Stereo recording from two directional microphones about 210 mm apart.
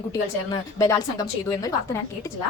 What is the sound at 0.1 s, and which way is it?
A woman's voice, 15° left (ahead or behind).